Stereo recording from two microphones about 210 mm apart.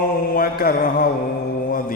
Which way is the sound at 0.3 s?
45° left (ahead or behind).